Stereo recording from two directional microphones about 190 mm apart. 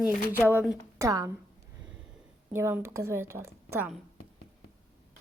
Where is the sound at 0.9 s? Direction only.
15° right (ahead or behind).